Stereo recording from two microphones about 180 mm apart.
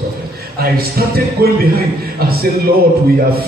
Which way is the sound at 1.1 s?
55° right (ahead or behind).